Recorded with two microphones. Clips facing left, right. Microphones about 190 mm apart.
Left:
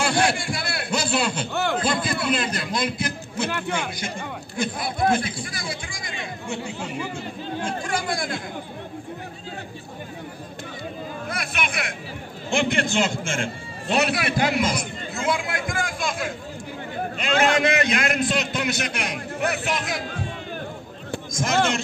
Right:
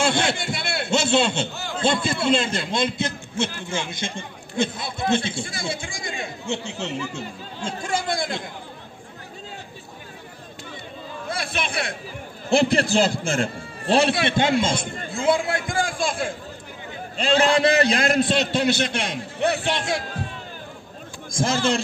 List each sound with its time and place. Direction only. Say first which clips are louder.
0.0 s a sound: even; 25° right (ahead or behind)
1.5 s a man's voice: left 8 dB; 60° left (ahead or behind)
1.8 s a man's voice: right 2 dB; 25° right (ahead or behind)
7.6 s speech: right 2 dB; 25° right (ahead or behind)
11.2 s chatter: right 2 dB; 30° right (ahead or behind)
12.4 s a man's voice: right 4 dB; 35° right (ahead or behind)
21.3 s a man's voice: right 3 dB; 30° right (ahead or behind)